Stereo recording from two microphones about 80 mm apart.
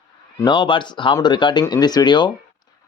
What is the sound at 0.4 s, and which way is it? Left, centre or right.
A man's voice, left.